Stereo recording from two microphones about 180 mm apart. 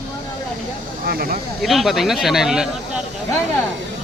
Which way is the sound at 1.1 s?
55° right (ahead or behind).